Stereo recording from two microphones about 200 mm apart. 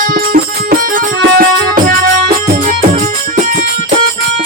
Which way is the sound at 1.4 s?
45° right (ahead or behind).